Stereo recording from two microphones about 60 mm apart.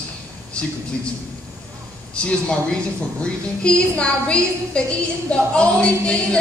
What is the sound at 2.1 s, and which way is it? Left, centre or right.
Speech, centre.